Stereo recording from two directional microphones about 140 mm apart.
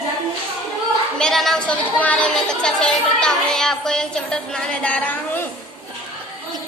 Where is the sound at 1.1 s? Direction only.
5° left (ahead or behind).